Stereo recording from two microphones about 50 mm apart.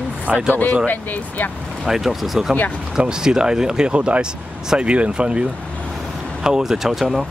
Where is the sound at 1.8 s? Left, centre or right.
Centre.